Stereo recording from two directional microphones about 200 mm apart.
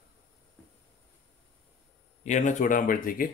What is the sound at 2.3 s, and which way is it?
Speech, 35° left (ahead or behind).